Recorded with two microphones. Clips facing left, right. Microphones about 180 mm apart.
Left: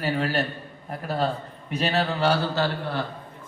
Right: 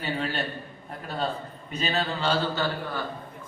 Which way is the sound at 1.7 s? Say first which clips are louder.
Left 4 dB; 70° left (ahead or behind).